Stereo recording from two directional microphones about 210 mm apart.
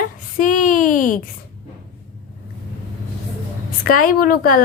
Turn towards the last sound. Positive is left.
turn(degrees=45)  # may be behind; listen again after turning